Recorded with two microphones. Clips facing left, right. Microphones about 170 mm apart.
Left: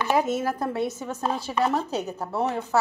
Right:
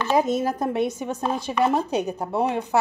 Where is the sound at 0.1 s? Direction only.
15° right (ahead or behind).